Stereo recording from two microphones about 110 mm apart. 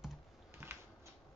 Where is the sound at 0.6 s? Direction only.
20° right (ahead or behind).